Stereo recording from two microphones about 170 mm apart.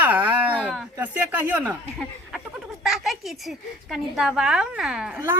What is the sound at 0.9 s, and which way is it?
Speech, 10° right (ahead or behind).